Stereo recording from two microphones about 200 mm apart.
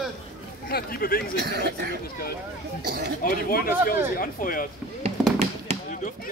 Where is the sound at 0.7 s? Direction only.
50° left (ahead or behind).